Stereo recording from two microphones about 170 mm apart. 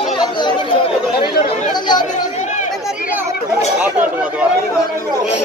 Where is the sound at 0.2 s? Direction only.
25° left (ahead or behind).